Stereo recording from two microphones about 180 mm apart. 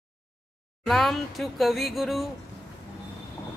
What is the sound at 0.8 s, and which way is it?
Speech, centre (ahead or behind).